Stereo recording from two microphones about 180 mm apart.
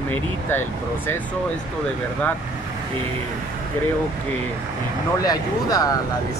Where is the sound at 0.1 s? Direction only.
10° left (ahead or behind).